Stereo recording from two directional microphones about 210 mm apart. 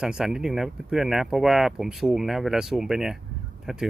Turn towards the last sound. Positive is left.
turn(degrees=0)  # may be behind; listen again after turning